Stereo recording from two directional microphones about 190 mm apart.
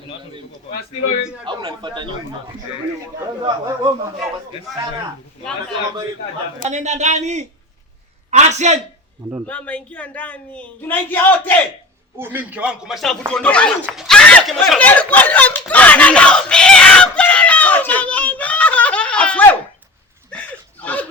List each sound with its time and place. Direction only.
1.5 s speech: 25° right (ahead or behind)
6.7 s a man's voice: 40° right (ahead or behind)
9.5 s speech: 10° left (ahead or behind)
12.1 s speech: 10° right (ahead or behind); by 13.7 s 5° left (ahead or behind)
13.8 s a sound: centre (ahead or behind)